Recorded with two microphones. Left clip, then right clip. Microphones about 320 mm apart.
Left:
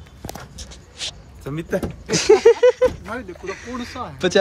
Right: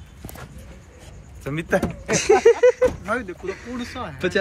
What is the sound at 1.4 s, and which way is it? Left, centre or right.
Speech, centre.